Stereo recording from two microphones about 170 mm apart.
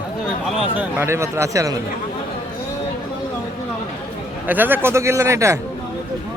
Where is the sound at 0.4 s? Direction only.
10° right (ahead or behind).